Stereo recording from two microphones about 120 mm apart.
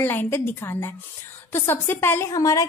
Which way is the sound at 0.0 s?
15° left (ahead or behind).